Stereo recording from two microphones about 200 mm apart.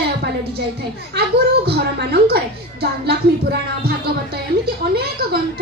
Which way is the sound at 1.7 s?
50° right (ahead or behind).